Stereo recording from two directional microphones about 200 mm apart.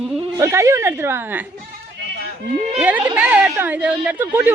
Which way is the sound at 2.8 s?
10° right (ahead or behind).